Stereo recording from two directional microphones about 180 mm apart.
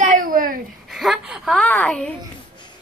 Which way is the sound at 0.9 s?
Centre (ahead or behind).